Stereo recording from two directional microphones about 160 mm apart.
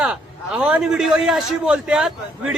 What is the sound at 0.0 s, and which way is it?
A man's voice, 5° right (ahead or behind).